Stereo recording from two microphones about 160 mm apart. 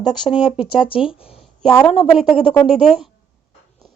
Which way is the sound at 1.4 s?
Centre (ahead or behind).